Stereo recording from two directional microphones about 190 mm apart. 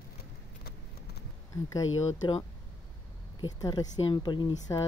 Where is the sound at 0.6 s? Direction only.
60° left (ahead or behind).